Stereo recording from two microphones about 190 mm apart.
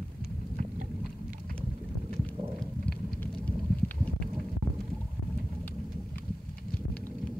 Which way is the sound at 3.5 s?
10° left (ahead or behind).